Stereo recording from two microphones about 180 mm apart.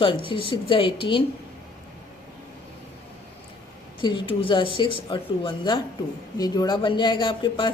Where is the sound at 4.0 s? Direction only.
25° left (ahead or behind).